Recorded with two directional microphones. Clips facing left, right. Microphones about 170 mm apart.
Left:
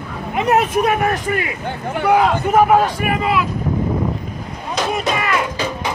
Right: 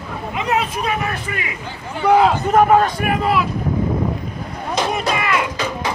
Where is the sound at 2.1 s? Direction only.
Centre (ahead or behind).